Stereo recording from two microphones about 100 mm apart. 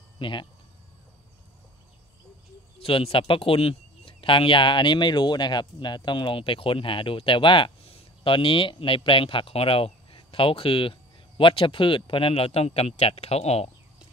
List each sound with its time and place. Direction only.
0.2 s speech: 50° left (ahead or behind)
2.8 s speech: 70° left (ahead or behind); by 13.7 s 90° left